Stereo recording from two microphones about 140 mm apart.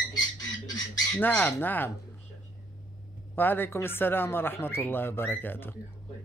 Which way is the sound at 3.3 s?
15° left (ahead or behind).